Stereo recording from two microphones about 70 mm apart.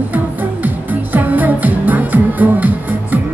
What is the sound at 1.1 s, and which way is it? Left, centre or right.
Music, right.